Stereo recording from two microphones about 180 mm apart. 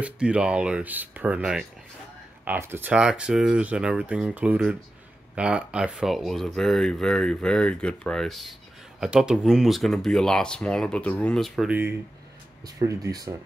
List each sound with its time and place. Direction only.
0.0 s speech: 5° right (ahead or behind)
12.6 s speech: 20° right (ahead or behind)